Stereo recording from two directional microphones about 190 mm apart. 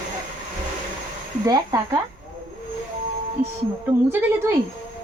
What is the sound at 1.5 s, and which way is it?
Speech, 15° right (ahead or behind).